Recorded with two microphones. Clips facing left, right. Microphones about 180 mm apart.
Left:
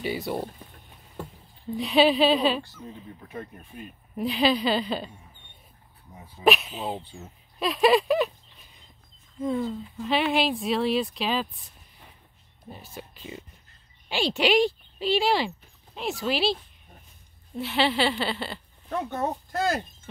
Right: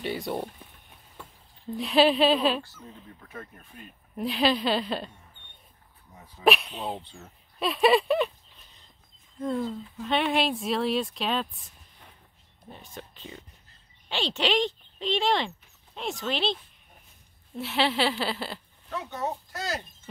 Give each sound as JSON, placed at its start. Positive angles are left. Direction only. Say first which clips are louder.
{"t": 0.0, "sound": "speech", "louder": "left 1 dB", "side_deg": 0}
{"t": 1.7, "sound": "speech", "louder": "left 1 dB", "side_deg": 0}
{"t": 3.2, "sound": "speech", "louder": "left 5 dB", "side_deg": 20}
{"t": 4.2, "sound": "speech", "louder": "left 2 dB", "side_deg": 0}
{"t": 6.1, "sound": "speech", "louder": "left 1 dB", "side_deg": 10}
{"t": 9.4, "sound": "speech", "louder": "left 2 dB", "side_deg": 0}
{"t": 12.6, "sound": "speech", "louder": "left 2 dB", "side_deg": 5}
{"t": 17.6, "sound": "speech", "louder": "left 2 dB", "side_deg": 0}
{"t": 19.0, "sound": "a child's voice", "louder": "left 3 dB", "side_deg": 55}